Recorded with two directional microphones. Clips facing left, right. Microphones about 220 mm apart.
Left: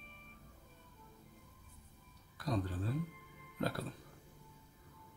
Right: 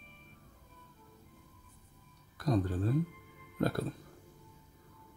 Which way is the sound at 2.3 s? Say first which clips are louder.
Right 6 dB; 45° right (ahead or behind).